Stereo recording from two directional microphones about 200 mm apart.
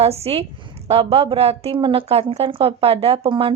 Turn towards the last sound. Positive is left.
turn(degrees=-25)  # may be behind; listen again after turning